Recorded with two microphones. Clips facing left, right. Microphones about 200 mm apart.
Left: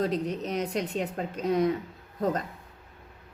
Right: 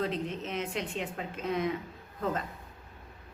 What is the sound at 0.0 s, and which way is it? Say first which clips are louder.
A woman's voice: left 5 dB; 40° left (ahead or behind).